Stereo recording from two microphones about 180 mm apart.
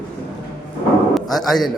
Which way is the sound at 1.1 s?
Centre (ahead or behind).